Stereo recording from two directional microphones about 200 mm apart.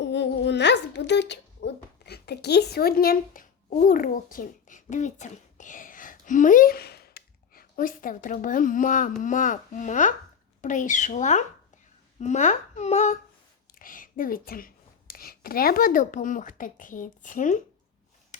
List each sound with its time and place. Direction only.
0.0 s a child's voice: 60° left (ahead or behind); by 17.6 s 40° left (ahead or behind)